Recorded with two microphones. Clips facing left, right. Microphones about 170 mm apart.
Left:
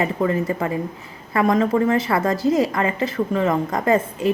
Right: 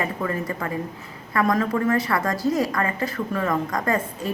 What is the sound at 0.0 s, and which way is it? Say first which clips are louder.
A woman's voice: left 6 dB; 25° left (ahead or behind).